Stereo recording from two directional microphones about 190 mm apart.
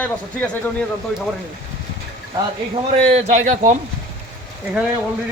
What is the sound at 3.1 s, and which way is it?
Speech, 35° right (ahead or behind).